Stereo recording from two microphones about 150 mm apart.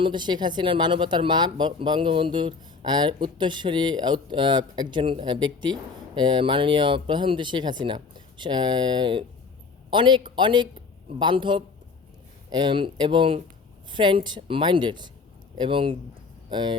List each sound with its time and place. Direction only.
0.0 s a man's voice: 30° right (ahead or behind)